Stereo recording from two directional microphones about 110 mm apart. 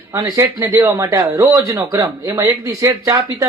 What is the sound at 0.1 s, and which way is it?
Speech, 25° right (ahead or behind).